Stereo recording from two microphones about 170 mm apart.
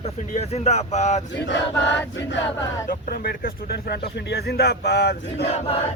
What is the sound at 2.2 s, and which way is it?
Choir, 90° left.